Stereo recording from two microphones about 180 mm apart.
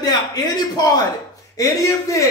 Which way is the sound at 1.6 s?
15° left (ahead or behind).